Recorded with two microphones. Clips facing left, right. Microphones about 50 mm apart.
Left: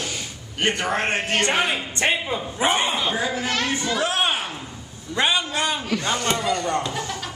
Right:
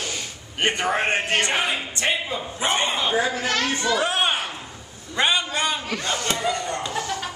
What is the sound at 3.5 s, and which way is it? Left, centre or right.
Speech, left.